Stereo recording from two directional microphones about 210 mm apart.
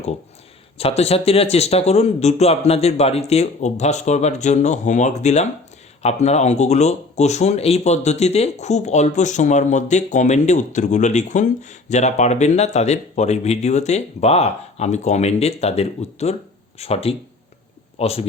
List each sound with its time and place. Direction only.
0.8 s speech: 30° left (ahead or behind)